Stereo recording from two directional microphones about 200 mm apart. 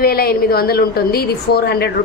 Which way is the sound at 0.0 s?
50° left (ahead or behind).